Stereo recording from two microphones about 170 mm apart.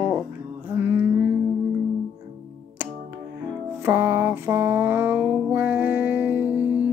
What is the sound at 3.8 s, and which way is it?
Mantra, 15° right (ahead or behind).